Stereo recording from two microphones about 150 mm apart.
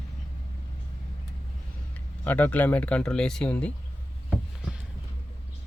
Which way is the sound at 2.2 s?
10° left (ahead or behind).